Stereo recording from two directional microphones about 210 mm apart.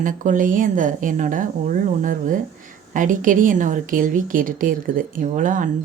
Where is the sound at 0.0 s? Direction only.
40° right (ahead or behind).